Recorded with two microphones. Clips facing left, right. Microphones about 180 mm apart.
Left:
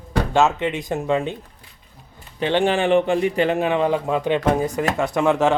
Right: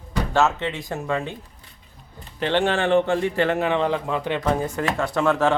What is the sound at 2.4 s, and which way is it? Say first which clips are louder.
A man's voice: left 2 dB; 15° left (ahead or behind).